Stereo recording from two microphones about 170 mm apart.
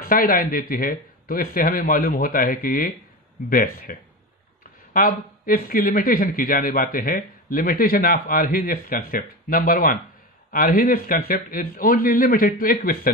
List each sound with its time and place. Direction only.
0.0 s a man's voice: 60° left (ahead or behind)
4.9 s a man's voice: 55° left (ahead or behind)